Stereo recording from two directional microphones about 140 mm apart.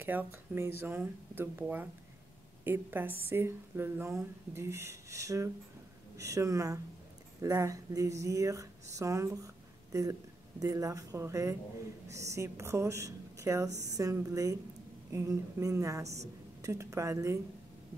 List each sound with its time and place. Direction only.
0.0 s speech: 15° right (ahead or behind)
10.6 s speech: 25° right (ahead or behind)